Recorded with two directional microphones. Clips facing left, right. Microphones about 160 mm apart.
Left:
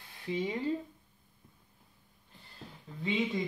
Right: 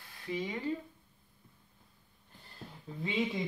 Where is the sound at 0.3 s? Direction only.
25° left (ahead or behind).